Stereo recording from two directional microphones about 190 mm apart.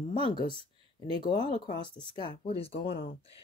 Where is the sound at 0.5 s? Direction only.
30° right (ahead or behind).